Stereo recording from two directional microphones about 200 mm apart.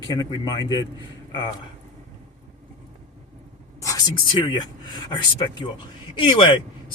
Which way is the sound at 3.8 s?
20° left (ahead or behind).